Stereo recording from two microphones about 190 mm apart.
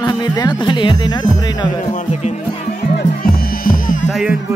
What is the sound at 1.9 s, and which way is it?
Music, 35° left (ahead or behind).